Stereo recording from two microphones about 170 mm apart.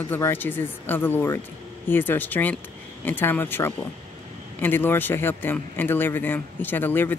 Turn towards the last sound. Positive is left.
turn(degrees=10)  # may be behind; listen again after turning